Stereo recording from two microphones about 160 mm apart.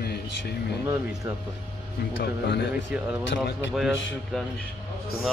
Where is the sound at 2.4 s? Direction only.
90° left.